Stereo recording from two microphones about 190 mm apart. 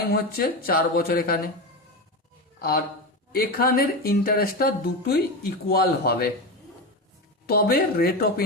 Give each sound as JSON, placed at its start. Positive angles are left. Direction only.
{"t": 0.1, "sound": "speech", "side_deg": 55}
{"t": 2.6, "sound": "speech", "side_deg": 55}
{"t": 7.4, "sound": "speech", "side_deg": 55}